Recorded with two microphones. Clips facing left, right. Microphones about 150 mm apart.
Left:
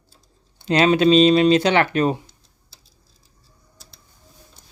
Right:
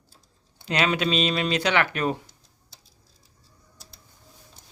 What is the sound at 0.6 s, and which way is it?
Speech, 30° left (ahead or behind).